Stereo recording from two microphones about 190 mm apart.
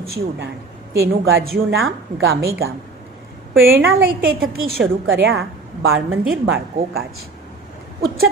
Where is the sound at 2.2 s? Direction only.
80° right.